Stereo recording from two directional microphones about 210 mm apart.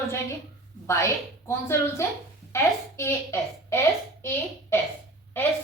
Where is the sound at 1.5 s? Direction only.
10° left (ahead or behind).